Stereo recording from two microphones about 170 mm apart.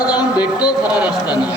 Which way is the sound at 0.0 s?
25° left (ahead or behind).